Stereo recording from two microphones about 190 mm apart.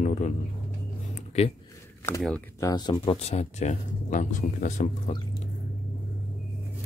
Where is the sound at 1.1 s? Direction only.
35° left (ahead or behind).